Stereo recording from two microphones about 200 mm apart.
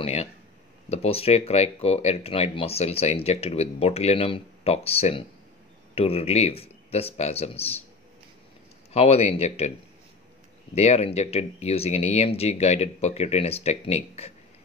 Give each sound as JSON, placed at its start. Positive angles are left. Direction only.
{"t": 0.0, "sound": "speech", "side_deg": 30}
{"t": 8.9, "sound": "speech", "side_deg": 30}
{"t": 10.7, "sound": "speech", "side_deg": 30}